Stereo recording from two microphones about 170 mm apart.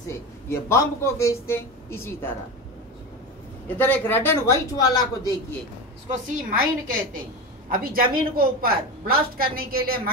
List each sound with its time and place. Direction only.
0.5 s speech: 15° left (ahead or behind)
3.6 s speech: 10° left (ahead or behind)
6.1 s a woman's voice: 55° right (ahead or behind)